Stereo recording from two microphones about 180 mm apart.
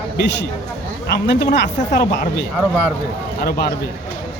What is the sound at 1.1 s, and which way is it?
Speech, 70° left (ahead or behind).